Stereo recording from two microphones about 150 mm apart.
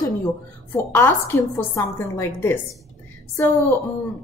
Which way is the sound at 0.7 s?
15° left (ahead or behind).